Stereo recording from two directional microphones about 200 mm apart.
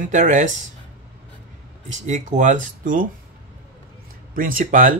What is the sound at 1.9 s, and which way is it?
Speech, 35° right (ahead or behind).